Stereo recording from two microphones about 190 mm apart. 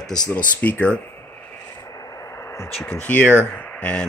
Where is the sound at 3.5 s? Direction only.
10° left (ahead or behind).